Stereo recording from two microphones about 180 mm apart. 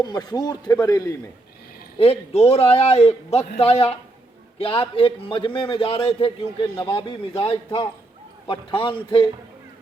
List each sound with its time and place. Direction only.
0.0 s chopping: 20° left (ahead or behind)
2.0 s a man's voice: 35° left (ahead or behind)
6.7 s chopping: 30° left (ahead or behind)